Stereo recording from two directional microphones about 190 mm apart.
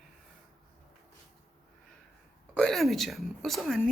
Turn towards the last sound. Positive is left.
turn(degrees=0)  # may be behind; listen again after turning